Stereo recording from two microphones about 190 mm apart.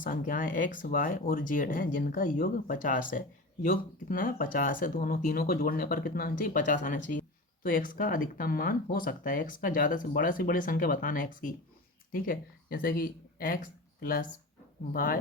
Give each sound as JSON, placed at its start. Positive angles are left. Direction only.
{"t": 0.0, "sound": "speech", "side_deg": 45}